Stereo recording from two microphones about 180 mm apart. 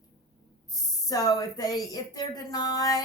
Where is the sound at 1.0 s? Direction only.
20° left (ahead or behind).